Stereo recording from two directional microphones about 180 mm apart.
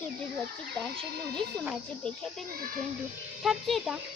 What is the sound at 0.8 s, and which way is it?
A child's voice, 5° left (ahead or behind).